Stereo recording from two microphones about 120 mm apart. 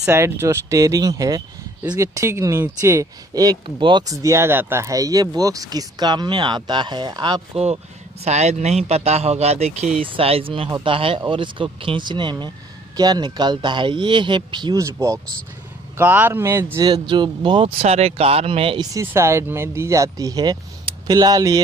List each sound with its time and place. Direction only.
0.0 s speech: 20° right (ahead or behind)
3.6 s speech: 45° right (ahead or behind)
4.0 s speech: 30° right (ahead or behind)
7.5 s a man's voice: 60° right (ahead or behind)
10.0 s speech: 50° right (ahead or behind)
14.8 s speech: 25° right (ahead or behind)
16.8 s speech: 35° right (ahead or behind)
17.8 s a man's voice: 60° right (ahead or behind)
18.8 s speech: 25° right (ahead or behind)